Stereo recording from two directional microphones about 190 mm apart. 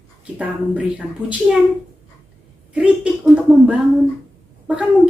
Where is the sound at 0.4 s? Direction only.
5° right (ahead or behind).